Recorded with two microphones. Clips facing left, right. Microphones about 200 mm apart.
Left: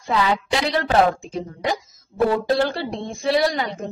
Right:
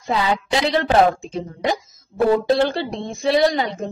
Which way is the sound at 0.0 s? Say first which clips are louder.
Even; 20° right (ahead or behind).